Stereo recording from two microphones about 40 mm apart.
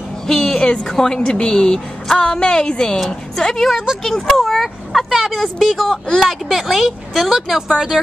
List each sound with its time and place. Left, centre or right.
0.3 s a sound: centre
0.8 s a woman's voice: centre
7.9 s speech: centre